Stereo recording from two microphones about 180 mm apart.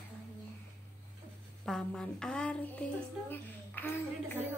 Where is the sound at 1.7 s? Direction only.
5° left (ahead or behind).